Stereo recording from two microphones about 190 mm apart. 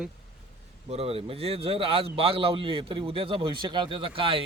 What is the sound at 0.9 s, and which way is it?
A man's voice, 30° right (ahead or behind).